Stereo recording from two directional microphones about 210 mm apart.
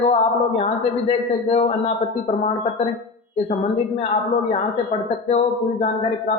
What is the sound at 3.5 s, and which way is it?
Speech, 30° left (ahead or behind).